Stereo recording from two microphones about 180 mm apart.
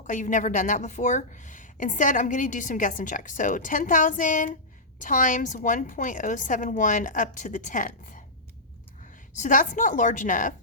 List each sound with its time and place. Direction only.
0.1 s a woman's voice: 45° left (ahead or behind)
9.4 s a woman's voice: 45° left (ahead or behind)